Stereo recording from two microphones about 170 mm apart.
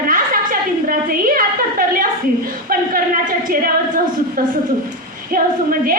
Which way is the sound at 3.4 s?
55° right (ahead or behind).